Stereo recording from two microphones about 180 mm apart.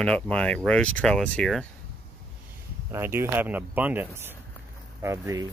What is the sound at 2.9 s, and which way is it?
Speech, 15° right (ahead or behind).